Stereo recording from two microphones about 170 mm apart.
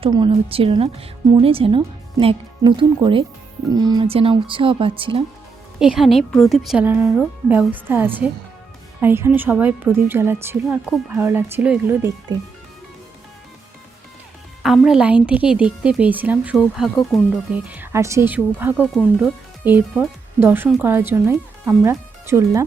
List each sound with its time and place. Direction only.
0.0 s speech: 30° right (ahead or behind)
5.8 s a woman's voice: 5° right (ahead or behind)
14.6 s a woman's voice: centre (ahead or behind); by 22.6 s 15° right (ahead or behind)